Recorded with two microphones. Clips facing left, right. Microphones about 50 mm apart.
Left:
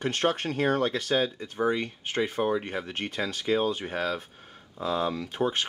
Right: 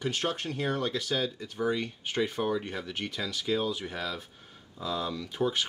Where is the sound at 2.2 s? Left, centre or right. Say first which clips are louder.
Left 3 dB; left.